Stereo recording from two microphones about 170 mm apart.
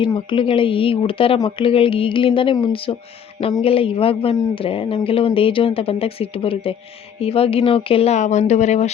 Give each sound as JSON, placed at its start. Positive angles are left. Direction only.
{"t": 0.0, "sound": "speech", "side_deg": 30}